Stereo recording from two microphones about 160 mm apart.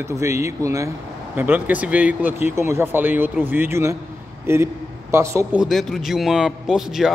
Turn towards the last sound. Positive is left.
turn(degrees=-5)  # may be behind; listen again after turning